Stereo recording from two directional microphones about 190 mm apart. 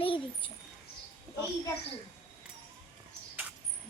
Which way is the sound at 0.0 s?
30° left (ahead or behind).